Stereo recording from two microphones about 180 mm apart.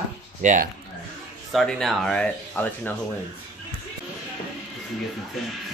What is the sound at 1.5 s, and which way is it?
Speech, centre (ahead or behind).